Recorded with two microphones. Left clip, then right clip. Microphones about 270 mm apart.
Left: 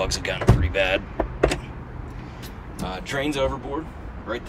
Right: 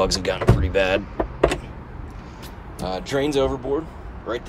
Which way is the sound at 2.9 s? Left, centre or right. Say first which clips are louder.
Right 4 dB; centre.